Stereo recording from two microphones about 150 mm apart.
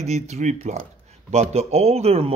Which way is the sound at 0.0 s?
50° right (ahead or behind).